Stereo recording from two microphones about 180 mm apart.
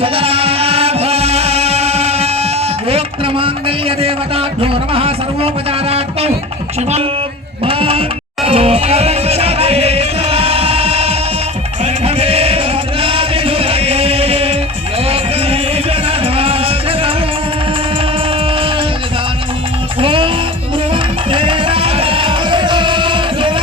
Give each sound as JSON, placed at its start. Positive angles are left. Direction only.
{"t": 0.0, "sound": "music", "side_deg": -30}
{"t": 2.9, "sound": "a sound", "side_deg": -30}
{"t": 7.6, "sound": "a sound", "side_deg": -30}
{"t": 8.4, "sound": "music", "side_deg": -35}
{"t": 16.0, "sound": "music", "side_deg": -30}
{"t": 20.0, "sound": "music", "side_deg": -30}